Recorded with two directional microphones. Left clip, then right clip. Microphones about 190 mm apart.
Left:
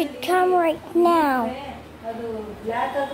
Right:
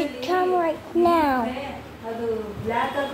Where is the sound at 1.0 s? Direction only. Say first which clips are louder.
Left 1 dB; 15° left (ahead or behind).